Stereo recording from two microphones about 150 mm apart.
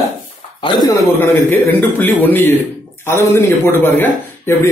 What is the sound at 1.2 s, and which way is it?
A man's voice, 10° left (ahead or behind).